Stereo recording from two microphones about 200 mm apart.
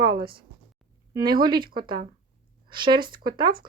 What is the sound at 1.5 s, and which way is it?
Speech, 45° right (ahead or behind).